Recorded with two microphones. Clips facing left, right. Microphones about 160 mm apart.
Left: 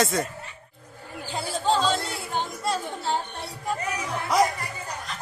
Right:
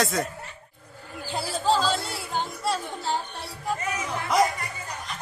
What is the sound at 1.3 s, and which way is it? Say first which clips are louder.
Music: even; 5° right (ahead or behind).